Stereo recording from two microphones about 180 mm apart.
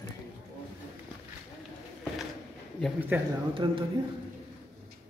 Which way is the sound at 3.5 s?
30° right (ahead or behind).